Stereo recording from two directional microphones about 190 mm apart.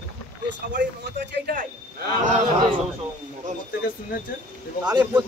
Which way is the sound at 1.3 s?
50° right (ahead or behind).